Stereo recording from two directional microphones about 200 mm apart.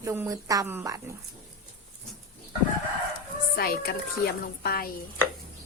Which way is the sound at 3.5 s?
50° left (ahead or behind).